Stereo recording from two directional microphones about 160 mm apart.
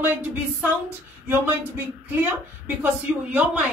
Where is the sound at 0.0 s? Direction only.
10° right (ahead or behind).